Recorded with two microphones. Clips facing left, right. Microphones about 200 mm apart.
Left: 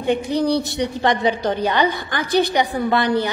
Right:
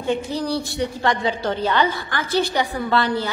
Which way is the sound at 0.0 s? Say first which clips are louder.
Left 4 dB; 15° left (ahead or behind).